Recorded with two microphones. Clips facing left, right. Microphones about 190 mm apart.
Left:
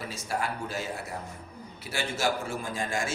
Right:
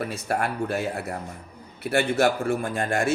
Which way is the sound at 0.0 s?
60° right (ahead or behind).